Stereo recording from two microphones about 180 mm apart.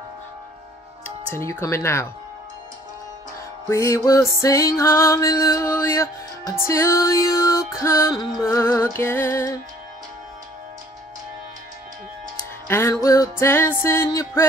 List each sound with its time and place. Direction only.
1.3 s music: 15° left (ahead or behind)
3.6 s music: 15° left (ahead or behind)
12.6 s music: 15° left (ahead or behind)